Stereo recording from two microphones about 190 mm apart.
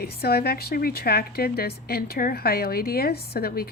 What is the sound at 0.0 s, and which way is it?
A woman's voice, 55° left (ahead or behind).